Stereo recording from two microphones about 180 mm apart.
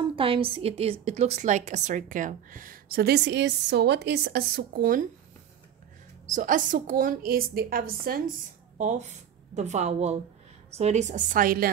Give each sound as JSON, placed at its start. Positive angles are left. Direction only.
{"t": 0.1, "sound": "a woman's voice", "side_deg": -30}
{"t": 6.2, "sound": "a woman's voice", "side_deg": -45}
{"t": 8.7, "sound": "a woman's voice", "side_deg": -40}